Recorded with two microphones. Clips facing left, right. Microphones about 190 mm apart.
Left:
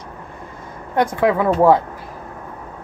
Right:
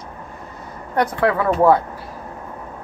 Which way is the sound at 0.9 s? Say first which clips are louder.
Left 2 dB; 15° left (ahead or behind).